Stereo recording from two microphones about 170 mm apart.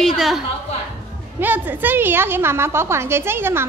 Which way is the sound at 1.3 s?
10° right (ahead or behind).